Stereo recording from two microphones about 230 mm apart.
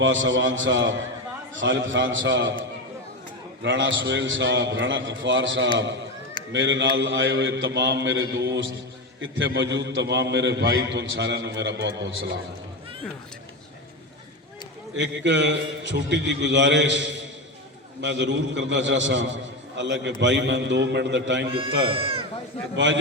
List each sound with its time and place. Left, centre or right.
0.0 s a man's voice: right
3.6 s a man's voice: right
14.9 s a man's voice: right
21.8 s speech: right
22.7 s a man's voice: right